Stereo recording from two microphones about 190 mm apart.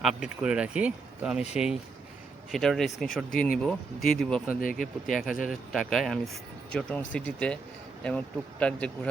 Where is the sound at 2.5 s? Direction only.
Centre (ahead or behind).